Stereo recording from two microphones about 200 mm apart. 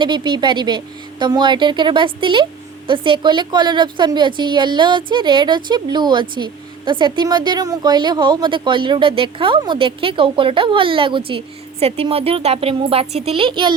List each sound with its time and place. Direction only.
0.0 s a woman's voice: 25° right (ahead or behind)